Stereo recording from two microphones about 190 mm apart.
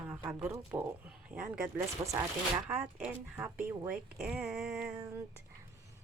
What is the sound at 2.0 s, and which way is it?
Speech, 20° right (ahead or behind).